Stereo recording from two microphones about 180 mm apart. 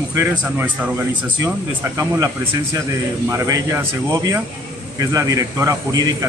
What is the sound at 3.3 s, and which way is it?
A man's voice, 15° right (ahead or behind).